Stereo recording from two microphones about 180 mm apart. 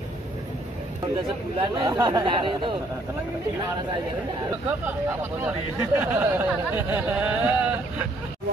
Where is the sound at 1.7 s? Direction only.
20° right (ahead or behind).